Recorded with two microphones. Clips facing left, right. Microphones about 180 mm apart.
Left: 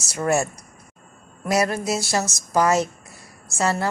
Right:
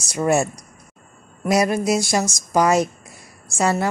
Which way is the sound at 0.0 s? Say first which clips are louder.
Right 3 dB; 15° right (ahead or behind).